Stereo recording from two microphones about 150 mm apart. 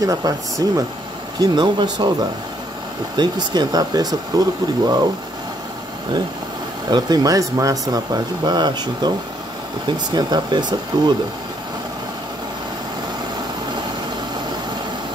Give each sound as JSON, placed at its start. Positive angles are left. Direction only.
{"t": 0.0, "sound": "speech", "side_deg": -25}
{"t": 3.2, "sound": "speech", "side_deg": -30}
{"t": 6.9, "sound": "speech", "side_deg": -25}